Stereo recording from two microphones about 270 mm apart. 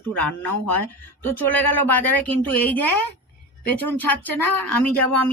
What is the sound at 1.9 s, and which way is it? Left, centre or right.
Speech, centre.